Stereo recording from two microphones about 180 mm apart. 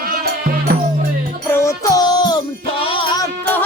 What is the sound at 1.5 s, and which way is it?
Music, 15° left (ahead or behind).